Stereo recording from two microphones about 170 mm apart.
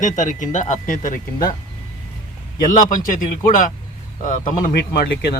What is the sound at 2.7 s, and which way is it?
Speech, 50° left (ahead or behind).